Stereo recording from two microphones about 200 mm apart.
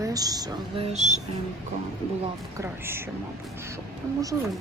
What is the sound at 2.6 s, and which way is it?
Speech, 10° right (ahead or behind).